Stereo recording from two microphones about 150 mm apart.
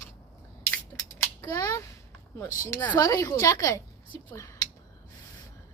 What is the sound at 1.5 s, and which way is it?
Speech, 20° left (ahead or behind).